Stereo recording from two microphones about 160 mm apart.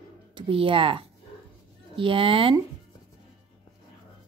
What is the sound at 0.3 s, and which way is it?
Speech, 30° right (ahead or behind).